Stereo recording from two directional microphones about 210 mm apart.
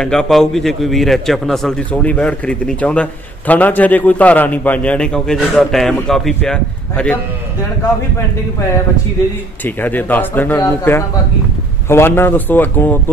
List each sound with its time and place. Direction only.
0.0 s a man's voice: 5° left (ahead or behind)
9.8 s speech: 10° left (ahead or behind)